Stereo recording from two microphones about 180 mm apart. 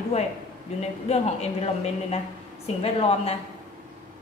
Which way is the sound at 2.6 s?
30° left (ahead or behind).